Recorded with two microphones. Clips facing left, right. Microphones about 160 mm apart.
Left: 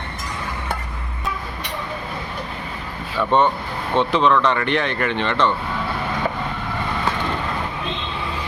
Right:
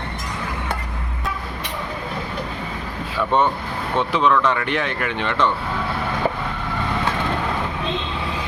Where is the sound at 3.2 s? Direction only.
5° right (ahead or behind).